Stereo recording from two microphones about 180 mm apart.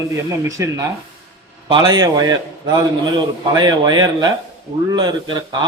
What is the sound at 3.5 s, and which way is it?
Speech, 20° right (ahead or behind).